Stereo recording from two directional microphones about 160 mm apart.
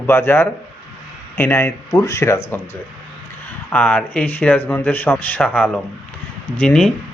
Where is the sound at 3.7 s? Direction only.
10° left (ahead or behind).